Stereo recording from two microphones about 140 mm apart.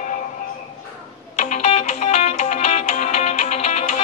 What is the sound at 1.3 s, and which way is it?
Music, 55° left (ahead or behind).